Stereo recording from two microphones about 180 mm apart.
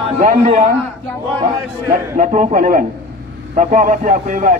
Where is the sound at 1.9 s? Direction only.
45° right (ahead or behind).